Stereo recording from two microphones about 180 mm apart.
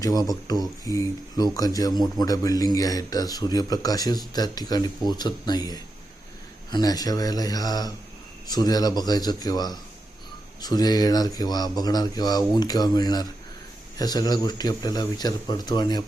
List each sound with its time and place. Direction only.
0.3 s a man's voice: 20° left (ahead or behind)